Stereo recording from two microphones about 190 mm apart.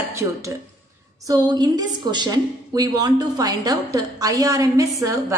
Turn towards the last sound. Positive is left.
turn(degrees=-15)  # may be behind; listen again after turning